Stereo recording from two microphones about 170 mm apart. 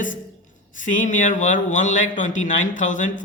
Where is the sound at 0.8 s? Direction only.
50° left (ahead or behind).